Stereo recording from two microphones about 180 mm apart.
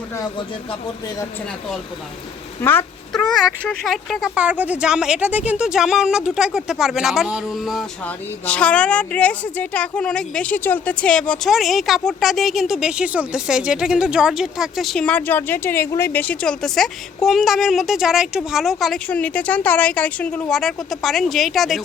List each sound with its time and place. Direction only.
0.2 s speech: 25° left (ahead or behind)
2.6 s a woman's voice: 10° left (ahead or behind)